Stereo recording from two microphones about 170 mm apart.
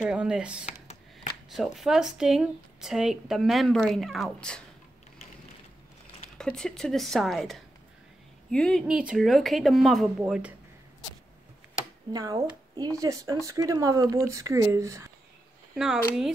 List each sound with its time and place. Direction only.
0.1 s speech: 5° right (ahead or behind)
6.3 s speech: 5° left (ahead or behind)
12.1 s speech: 20° right (ahead or behind)
15.7 s speech: 5° right (ahead or behind)